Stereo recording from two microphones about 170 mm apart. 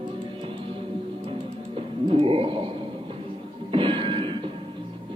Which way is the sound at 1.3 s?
30° right (ahead or behind).